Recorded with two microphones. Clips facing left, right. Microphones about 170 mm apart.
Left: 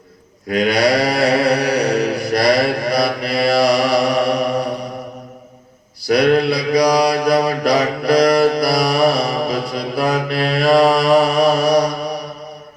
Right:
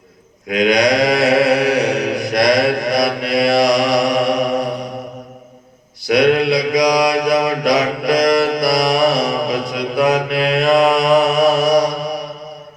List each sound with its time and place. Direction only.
0.7 s mantra: 5° left (ahead or behind)
6.1 s mantra: centre (ahead or behind)